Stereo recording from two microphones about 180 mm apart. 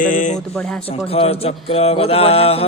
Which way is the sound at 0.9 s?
30° left (ahead or behind).